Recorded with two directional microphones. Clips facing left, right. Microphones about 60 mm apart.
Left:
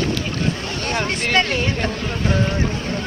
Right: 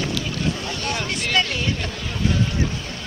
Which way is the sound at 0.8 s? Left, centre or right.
Left.